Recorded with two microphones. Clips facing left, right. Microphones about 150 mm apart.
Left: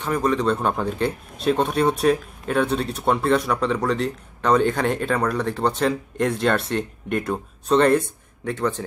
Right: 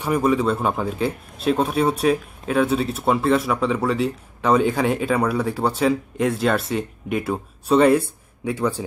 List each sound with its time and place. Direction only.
0.0 s a man's voice: 10° right (ahead or behind)